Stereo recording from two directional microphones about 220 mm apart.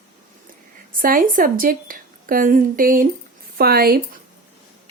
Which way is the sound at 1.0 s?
40° right (ahead or behind).